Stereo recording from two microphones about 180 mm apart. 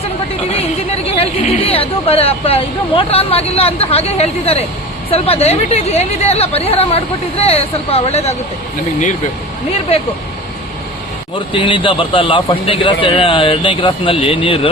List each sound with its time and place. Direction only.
1.2 s speech: 30° left (ahead or behind)
11.3 s speech: 30° left (ahead or behind)